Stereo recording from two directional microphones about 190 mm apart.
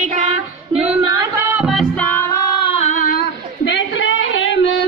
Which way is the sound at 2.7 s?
35° left (ahead or behind).